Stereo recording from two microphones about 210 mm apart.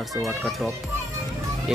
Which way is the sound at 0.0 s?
Centre (ahead or behind).